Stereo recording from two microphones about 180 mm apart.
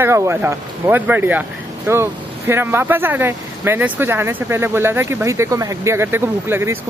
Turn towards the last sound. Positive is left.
turn(degrees=-15)  # may be behind; listen again after turning